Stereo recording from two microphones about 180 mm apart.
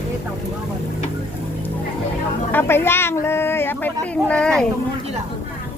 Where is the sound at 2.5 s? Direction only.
10° left (ahead or behind).